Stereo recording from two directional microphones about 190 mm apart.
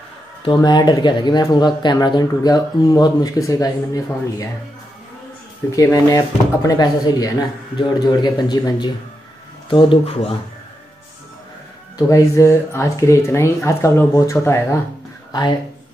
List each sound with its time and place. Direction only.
0.6 s speech: 20° left (ahead or behind)
5.8 s speech: 15° left (ahead or behind)
12.1 s speech: 15° left (ahead or behind)